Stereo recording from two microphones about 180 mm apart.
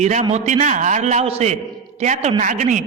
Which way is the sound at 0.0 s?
40° right (ahead or behind).